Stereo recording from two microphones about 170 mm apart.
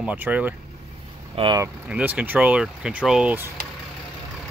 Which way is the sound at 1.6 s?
10° right (ahead or behind).